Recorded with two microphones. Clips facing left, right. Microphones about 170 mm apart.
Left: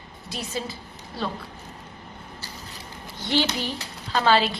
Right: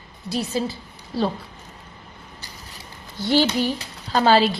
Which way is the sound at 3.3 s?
40° right (ahead or behind).